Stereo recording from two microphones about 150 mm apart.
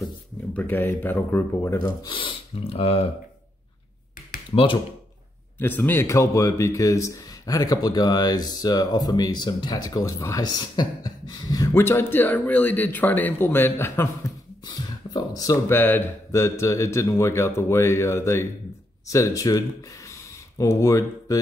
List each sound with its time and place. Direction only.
0.6 s speech: 10° left (ahead or behind)
1.8 s speech: 30° left (ahead or behind)
4.5 s speech: 35° left (ahead or behind)
5.6 s speech: 15° left (ahead or behind)
20.1 s a sound: 20° left (ahead or behind)